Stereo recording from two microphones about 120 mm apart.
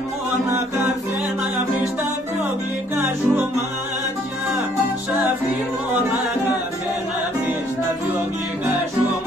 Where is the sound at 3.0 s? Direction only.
20° right (ahead or behind).